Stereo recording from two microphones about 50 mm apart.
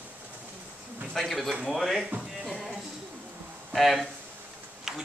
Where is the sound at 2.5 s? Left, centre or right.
Centre.